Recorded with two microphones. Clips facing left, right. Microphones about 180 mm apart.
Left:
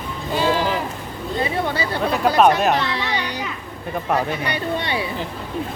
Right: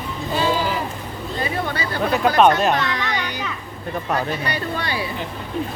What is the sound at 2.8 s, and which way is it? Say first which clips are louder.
Music: left 1 dB; 30° left (ahead or behind).